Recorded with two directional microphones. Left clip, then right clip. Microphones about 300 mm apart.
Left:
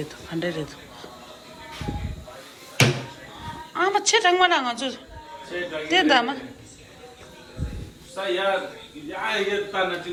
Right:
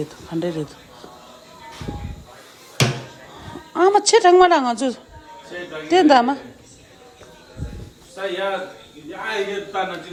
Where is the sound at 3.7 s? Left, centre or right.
Centre.